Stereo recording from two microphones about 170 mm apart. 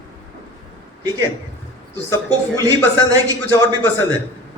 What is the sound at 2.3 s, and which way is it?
Speech, 20° right (ahead or behind).